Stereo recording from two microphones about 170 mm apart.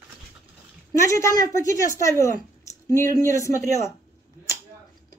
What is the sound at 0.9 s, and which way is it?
A woman's voice, 20° left (ahead or behind).